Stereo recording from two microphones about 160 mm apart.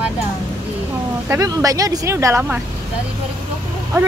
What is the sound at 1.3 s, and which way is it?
Speech, 20° right (ahead or behind).